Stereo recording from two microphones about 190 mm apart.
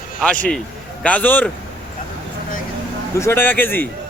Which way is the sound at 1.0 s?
10° left (ahead or behind).